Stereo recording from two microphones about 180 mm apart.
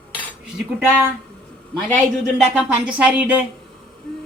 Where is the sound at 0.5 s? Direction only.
10° right (ahead or behind).